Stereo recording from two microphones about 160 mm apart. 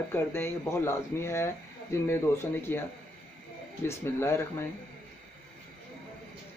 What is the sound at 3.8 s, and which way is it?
Speech, 15° left (ahead or behind).